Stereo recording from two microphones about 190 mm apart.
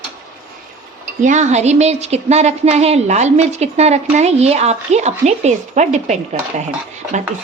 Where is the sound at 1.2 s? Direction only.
40° right (ahead or behind).